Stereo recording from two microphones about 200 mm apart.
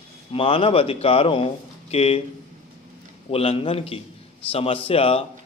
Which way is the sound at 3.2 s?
30° left (ahead or behind).